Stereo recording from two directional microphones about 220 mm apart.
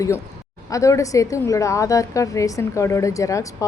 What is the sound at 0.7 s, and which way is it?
A woman's voice, 15° left (ahead or behind).